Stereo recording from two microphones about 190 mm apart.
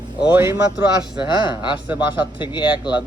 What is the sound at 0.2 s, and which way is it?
Speech, 10° right (ahead or behind).